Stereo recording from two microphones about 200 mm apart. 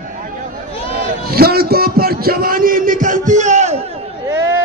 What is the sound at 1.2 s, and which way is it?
A man's voice, 50° right (ahead or behind).